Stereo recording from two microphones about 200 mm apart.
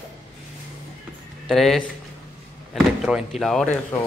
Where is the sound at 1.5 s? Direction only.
Centre (ahead or behind).